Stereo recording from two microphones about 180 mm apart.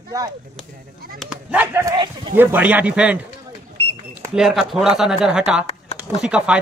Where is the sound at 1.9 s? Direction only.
25° right (ahead or behind).